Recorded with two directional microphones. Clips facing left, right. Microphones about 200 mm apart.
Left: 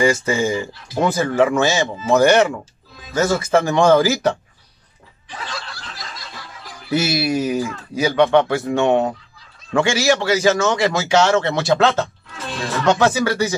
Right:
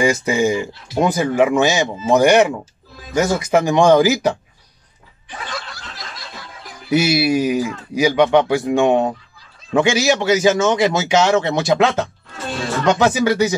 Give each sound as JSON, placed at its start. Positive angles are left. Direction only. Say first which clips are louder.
{"t": 0.0, "sound": "speech", "louder": "right 1 dB", "side_deg": -15}
{"t": 6.6, "sound": "speech", "louder": "right 3 dB", "side_deg": -15}